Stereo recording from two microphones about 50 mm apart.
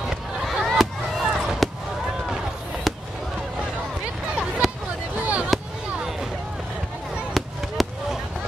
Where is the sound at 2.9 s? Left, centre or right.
Centre.